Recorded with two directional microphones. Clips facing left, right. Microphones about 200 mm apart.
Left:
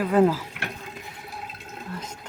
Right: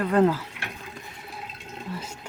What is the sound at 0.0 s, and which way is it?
Speech, 5° left (ahead or behind).